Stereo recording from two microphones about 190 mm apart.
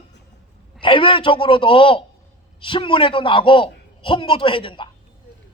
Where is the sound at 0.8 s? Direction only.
25° left (ahead or behind).